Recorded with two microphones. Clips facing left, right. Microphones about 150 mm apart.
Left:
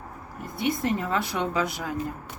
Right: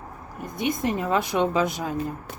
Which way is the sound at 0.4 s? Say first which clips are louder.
Right 1 dB; 20° right (ahead or behind).